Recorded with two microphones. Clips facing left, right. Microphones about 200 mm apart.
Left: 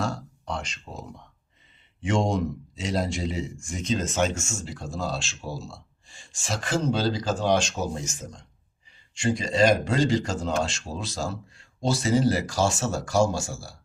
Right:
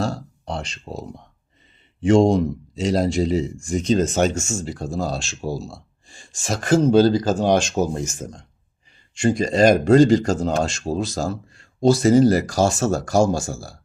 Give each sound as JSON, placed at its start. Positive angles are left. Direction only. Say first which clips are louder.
{"t": 0.0, "sound": "a man's voice", "louder": "right 5 dB", "side_deg": -30}